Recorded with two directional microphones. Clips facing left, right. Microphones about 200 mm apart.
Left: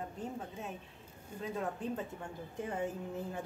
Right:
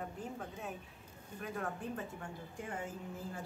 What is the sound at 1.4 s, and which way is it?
Speech, 20° left (ahead or behind).